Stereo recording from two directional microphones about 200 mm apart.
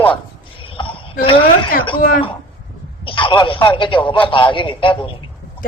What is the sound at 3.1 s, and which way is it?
Speech, 25° left (ahead or behind).